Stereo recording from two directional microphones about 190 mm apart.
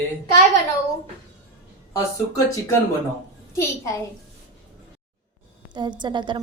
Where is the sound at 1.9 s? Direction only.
15° left (ahead or behind).